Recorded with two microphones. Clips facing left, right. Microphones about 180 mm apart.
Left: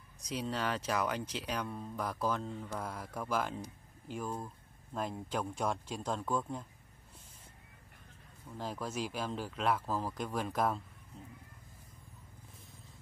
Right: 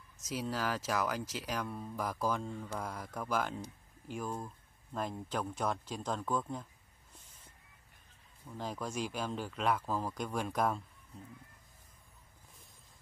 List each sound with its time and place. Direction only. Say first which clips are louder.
0.2 s speech: even; centre (ahead or behind)
2.8 s speech: even; 5° left (ahead or behind)
8.5 s speech: even; 5° left (ahead or behind)